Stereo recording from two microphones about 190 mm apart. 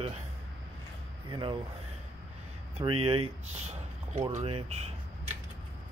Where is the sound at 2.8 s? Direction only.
30° right (ahead or behind).